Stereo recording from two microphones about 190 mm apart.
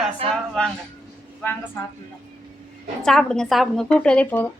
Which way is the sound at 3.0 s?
Centre (ahead or behind).